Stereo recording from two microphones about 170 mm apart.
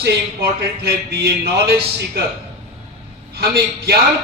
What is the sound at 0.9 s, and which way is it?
Speech, 70° right (ahead or behind).